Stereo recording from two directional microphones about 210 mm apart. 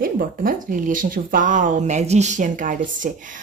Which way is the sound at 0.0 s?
40° right (ahead or behind).